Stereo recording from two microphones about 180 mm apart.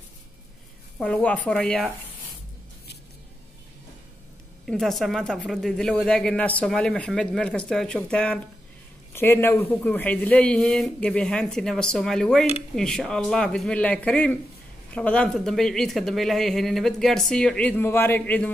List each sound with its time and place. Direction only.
0.9 s speech: 5° left (ahead or behind)
4.6 s speech: centre (ahead or behind)